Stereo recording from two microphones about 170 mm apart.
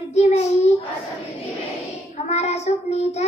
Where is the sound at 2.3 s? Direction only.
40° left (ahead or behind).